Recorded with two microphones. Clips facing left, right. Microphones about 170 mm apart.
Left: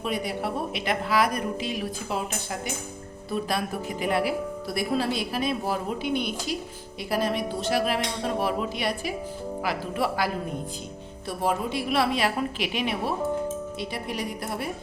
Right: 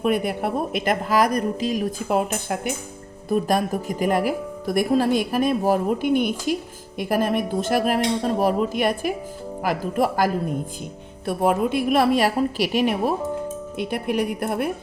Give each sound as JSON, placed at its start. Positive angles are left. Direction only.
{"t": 0.0, "sound": "speech", "side_deg": -55}
{"t": 13.7, "sound": "a woman's voice", "side_deg": -55}